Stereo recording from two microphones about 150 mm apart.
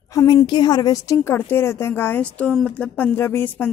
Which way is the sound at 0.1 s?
20° left (ahead or behind).